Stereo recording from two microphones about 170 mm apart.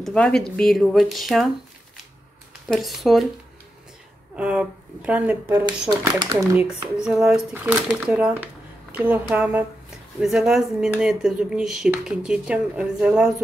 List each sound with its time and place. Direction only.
0.0 s speech: 5° left (ahead or behind)
2.7 s speech: centre (ahead or behind)
4.4 s speech: 5° right (ahead or behind)
5.9 s speech: 20° right (ahead or behind)
6.5 s a woman's voice: 5° right (ahead or behind)